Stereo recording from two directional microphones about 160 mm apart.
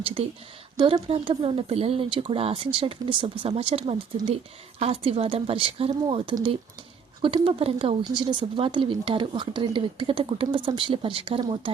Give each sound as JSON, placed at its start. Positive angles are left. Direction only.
{"t": 0.0, "sound": "speech", "side_deg": -35}